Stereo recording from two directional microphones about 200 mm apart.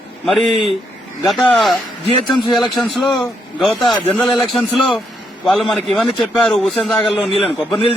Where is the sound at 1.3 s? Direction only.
Centre (ahead or behind).